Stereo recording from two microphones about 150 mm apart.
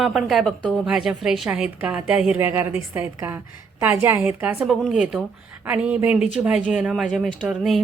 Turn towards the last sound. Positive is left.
turn(degrees=0)  # may be behind; listen again after turning